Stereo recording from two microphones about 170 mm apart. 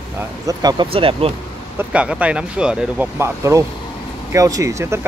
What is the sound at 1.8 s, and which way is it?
Speech, 5° right (ahead or behind).